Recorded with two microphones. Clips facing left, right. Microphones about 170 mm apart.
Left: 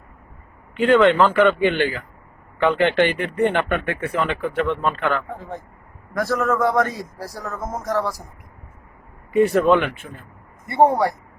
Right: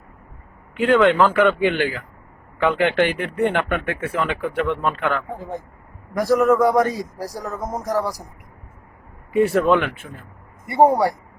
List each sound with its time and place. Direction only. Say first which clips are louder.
0.8 s speech: left 1 dB; 5° right (ahead or behind)
9.3 s speech: left 1 dB; 5° right (ahead or behind)